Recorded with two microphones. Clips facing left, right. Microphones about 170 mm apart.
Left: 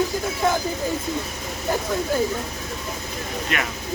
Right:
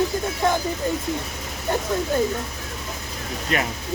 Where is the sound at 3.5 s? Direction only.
35° right (ahead or behind).